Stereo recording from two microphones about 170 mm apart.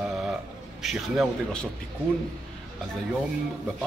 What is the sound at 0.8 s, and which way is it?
Speech, centre (ahead or behind).